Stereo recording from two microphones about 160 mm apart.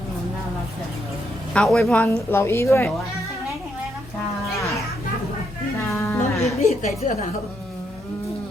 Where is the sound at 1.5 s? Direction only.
Centre (ahead or behind).